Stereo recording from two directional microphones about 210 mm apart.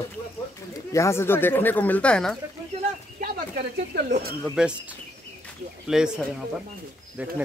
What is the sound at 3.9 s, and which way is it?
Speech, 45° right (ahead or behind).